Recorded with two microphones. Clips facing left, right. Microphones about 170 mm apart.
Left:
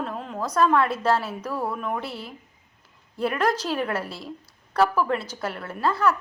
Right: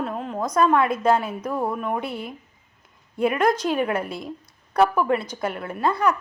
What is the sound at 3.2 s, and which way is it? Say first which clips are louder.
A woman's voice: right 4 dB; 10° right (ahead or behind).